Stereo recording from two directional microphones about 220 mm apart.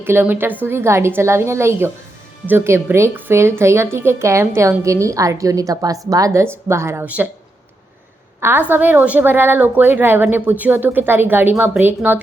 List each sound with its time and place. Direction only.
0.0 s a woman's voice: 10° right (ahead or behind)
8.4 s a woman's voice: 10° right (ahead or behind)